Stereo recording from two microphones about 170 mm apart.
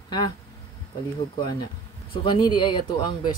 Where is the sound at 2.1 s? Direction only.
30° left (ahead or behind).